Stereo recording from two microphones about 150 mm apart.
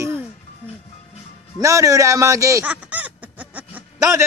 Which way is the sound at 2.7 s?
10° right (ahead or behind).